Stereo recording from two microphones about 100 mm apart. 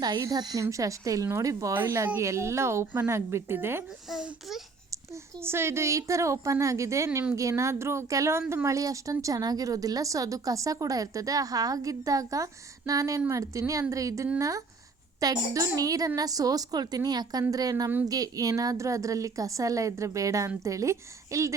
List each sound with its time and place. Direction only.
0.0 s a woman's voice: 40° right (ahead or behind); by 3.8 s 25° right (ahead or behind)
4.1 s a child's voice: 5° right (ahead or behind)
5.1 s a woman's voice: 25° right (ahead or behind)